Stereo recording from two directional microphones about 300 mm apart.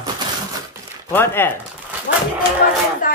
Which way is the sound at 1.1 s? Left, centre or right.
Centre.